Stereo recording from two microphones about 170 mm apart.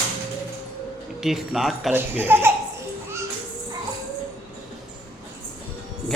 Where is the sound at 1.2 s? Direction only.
Centre (ahead or behind).